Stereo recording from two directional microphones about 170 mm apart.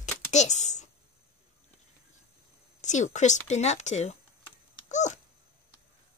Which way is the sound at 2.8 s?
45° left (ahead or behind).